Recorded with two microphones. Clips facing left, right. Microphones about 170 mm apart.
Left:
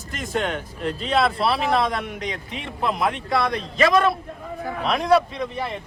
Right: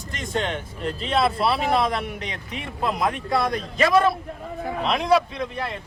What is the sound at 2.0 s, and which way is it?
Speech, 40° left (ahead or behind).